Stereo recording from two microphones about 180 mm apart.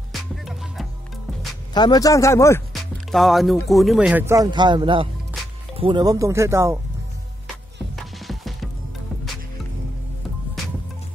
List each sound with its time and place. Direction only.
0.1 s music: centre (ahead or behind)
1.7 s a man's voice: 25° left (ahead or behind)
2.7 s music: centre (ahead or behind)
3.6 s speech: centre (ahead or behind)
4.5 s speech: 25° right (ahead or behind)
7.9 s music: centre (ahead or behind)